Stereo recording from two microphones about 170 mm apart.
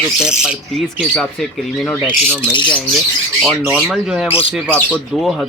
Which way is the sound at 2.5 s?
30° left (ahead or behind).